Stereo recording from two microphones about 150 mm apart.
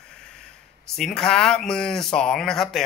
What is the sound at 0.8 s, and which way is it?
Speech, 5° left (ahead or behind).